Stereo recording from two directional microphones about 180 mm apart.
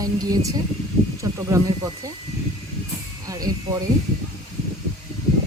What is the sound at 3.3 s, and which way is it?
Speech, 20° right (ahead or behind).